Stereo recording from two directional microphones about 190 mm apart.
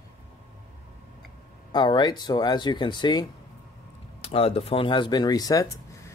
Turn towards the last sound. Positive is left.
turn(degrees=20)  # may be behind; listen again after turning